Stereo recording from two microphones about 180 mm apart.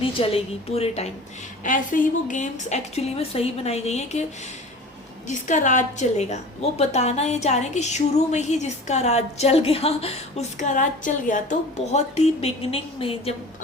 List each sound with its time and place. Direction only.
0.0 s a woman's voice: 30° left (ahead or behind)
1.6 s a woman's voice: 45° left (ahead or behind)
5.3 s a woman's voice: 45° left (ahead or behind)